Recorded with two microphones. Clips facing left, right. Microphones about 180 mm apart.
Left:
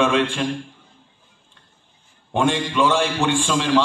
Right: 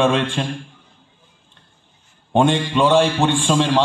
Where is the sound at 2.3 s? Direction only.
35° right (ahead or behind).